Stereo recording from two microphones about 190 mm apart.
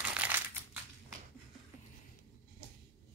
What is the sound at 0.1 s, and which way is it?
Crumpling, 10° right (ahead or behind).